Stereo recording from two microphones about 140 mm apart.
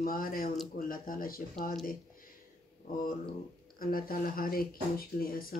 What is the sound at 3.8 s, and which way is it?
Speech, 90° left.